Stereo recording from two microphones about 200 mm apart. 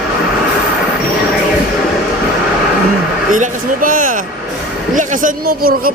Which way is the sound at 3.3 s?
40° right (ahead or behind).